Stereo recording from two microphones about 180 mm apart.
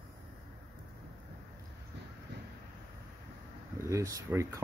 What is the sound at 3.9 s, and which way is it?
Speech, 20° right (ahead or behind).